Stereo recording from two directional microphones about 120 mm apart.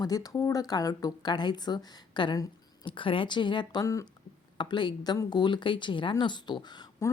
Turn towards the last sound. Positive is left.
turn(degrees=40)  # may be behind; listen again after turning